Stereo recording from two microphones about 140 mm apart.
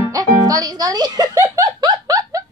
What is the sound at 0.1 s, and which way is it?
Music, 25° right (ahead or behind).